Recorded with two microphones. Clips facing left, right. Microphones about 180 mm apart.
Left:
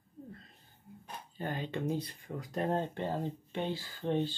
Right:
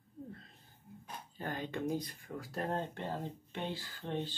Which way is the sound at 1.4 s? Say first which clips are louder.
Left 2 dB; 15° left (ahead or behind).